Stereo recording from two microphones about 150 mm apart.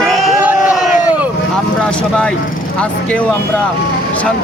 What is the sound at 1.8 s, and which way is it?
Speech, 5° left (ahead or behind).